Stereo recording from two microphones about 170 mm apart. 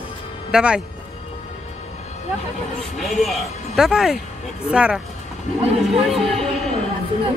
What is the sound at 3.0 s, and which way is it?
Speech, centre (ahead or behind).